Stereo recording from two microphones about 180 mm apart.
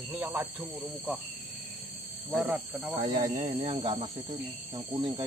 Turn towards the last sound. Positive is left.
turn(degrees=-25)  # may be behind; listen again after turning